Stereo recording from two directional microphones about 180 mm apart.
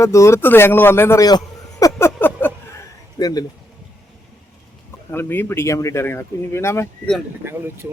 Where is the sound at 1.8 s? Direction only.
15° left (ahead or behind).